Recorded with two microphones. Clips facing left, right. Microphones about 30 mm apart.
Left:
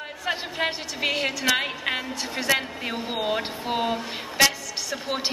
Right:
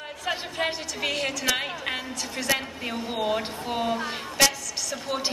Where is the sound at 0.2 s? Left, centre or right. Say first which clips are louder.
Left 1 dB; centre.